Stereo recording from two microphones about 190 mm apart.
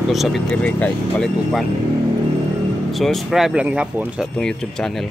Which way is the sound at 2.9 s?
Centre (ahead or behind).